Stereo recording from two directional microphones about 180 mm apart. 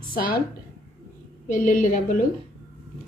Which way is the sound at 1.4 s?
45° left (ahead or behind).